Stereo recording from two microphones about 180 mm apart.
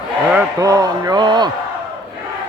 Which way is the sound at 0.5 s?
20° right (ahead or behind).